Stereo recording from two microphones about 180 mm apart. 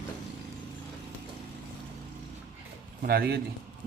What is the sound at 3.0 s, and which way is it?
Speech, 60° right (ahead or behind).